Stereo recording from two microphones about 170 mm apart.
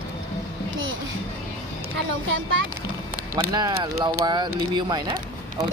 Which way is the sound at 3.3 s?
20° right (ahead or behind).